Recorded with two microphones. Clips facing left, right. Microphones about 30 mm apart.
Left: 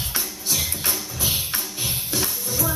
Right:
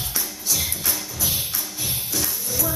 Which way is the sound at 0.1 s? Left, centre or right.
Left.